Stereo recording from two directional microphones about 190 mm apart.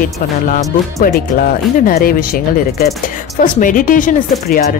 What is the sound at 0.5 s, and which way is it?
Speech, 45° left (ahead or behind).